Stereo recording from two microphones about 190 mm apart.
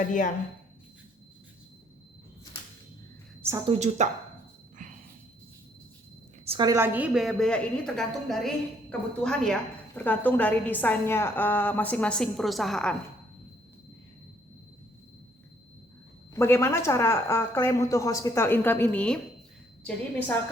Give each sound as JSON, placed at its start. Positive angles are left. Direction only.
{"t": 0.0, "sound": "a woman's voice", "side_deg": 40}
{"t": 3.7, "sound": "speech", "side_deg": -35}
{"t": 4.8, "sound": "cricket", "side_deg": -40}
{"t": 6.4, "sound": "a sound", "side_deg": -30}
{"t": 6.7, "sound": "a woman's voice", "side_deg": -10}
{"t": 16.3, "sound": "speech", "side_deg": 15}